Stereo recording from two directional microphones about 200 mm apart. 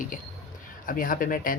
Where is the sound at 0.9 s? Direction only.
45° left (ahead or behind).